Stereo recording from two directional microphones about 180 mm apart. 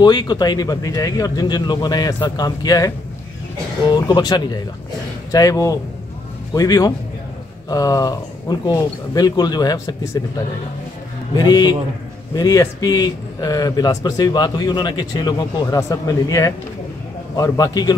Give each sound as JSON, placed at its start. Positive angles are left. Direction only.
{"t": 0.0, "sound": "speech", "side_deg": 25}
{"t": 3.9, "sound": "speech", "side_deg": 25}
{"t": 11.3, "sound": "speech", "side_deg": 20}